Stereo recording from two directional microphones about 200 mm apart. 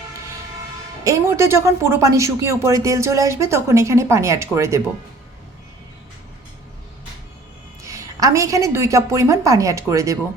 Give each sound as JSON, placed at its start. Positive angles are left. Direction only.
{"t": 1.0, "sound": "speech", "side_deg": -15}
{"t": 7.8, "sound": "a woman's voice", "side_deg": -15}